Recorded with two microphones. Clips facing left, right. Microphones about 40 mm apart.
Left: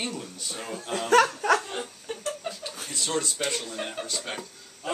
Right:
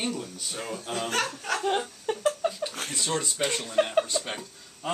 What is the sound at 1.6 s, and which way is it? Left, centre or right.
Laughter, right.